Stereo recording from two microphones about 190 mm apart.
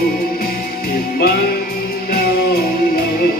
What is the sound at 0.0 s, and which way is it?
Music, 50° left (ahead or behind).